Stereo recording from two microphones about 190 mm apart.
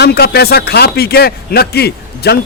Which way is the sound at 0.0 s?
55° left (ahead or behind).